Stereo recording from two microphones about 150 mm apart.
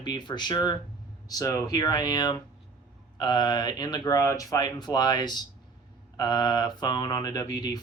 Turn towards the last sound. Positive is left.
turn(degrees=25)  # may be behind; listen again after turning